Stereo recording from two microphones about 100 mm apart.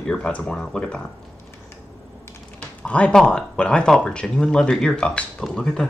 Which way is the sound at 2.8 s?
10° left (ahead or behind).